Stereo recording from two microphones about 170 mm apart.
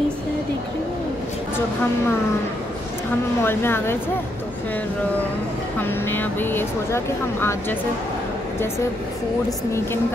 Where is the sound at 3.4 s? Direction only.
15° left (ahead or behind).